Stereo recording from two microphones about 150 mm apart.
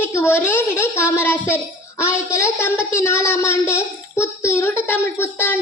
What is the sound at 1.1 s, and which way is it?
A child's voice, 15° left (ahead or behind).